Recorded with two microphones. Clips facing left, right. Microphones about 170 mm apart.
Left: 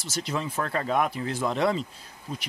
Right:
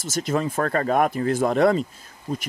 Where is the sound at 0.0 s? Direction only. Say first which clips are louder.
Right 7 dB; 45° right (ahead or behind).